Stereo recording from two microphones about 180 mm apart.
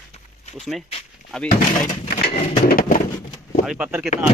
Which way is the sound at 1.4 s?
55° left (ahead or behind).